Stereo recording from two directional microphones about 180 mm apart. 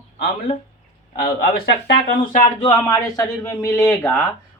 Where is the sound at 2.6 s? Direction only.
20° left (ahead or behind).